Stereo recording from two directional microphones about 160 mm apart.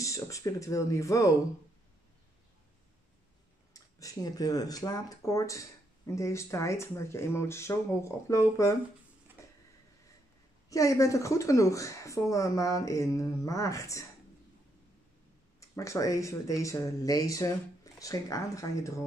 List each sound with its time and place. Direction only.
0.0 s speech: 20° left (ahead or behind)
3.7 s speech: 20° left (ahead or behind)
9.4 s a sound: 20° left (ahead or behind)
10.7 s speech: 20° left (ahead or behind)
15.7 s speech: 20° left (ahead or behind)